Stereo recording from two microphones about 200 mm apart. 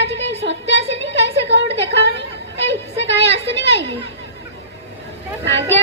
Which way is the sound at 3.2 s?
30° right (ahead or behind).